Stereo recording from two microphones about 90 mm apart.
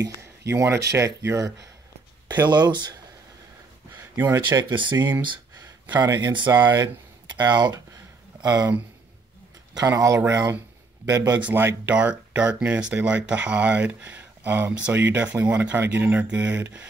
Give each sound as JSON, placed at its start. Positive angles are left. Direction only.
{"t": 0.0, "sound": "speech", "side_deg": -30}
{"t": 2.2, "sound": "speech", "side_deg": -50}
{"t": 4.1, "sound": "speech", "side_deg": -35}
{"t": 4.6, "sound": "speech", "side_deg": -60}
{"t": 5.9, "sound": "speech", "side_deg": -50}
{"t": 6.3, "sound": "speech", "side_deg": -60}
{"t": 9.8, "sound": "speech", "side_deg": -40}
{"t": 11.3, "sound": "speech", "side_deg": -20}